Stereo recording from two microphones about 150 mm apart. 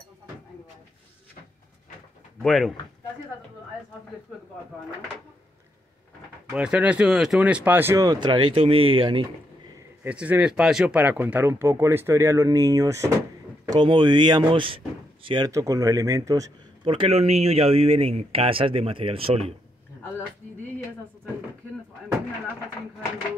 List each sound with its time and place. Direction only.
2.4 s speech: 5° left (ahead or behind)
6.5 s speech: 5° right (ahead or behind); by 9.2 s 35° right (ahead or behind)
10.0 s speech: 10° right (ahead or behind)
16.8 s speech: 35° right (ahead or behind)